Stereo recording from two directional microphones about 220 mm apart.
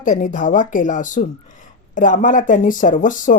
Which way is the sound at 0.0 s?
35° left (ahead or behind).